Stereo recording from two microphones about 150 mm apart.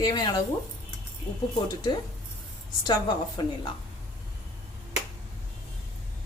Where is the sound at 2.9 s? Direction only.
30° left (ahead or behind).